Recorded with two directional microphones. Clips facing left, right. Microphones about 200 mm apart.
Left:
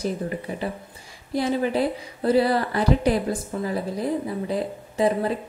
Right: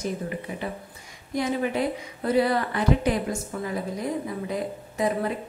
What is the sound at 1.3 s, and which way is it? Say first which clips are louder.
A woman's voice: left 3 dB; 30° left (ahead or behind).